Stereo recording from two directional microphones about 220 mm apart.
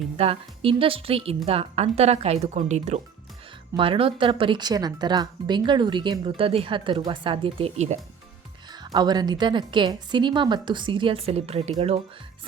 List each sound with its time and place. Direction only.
0.2 s speech: 25° right (ahead or behind)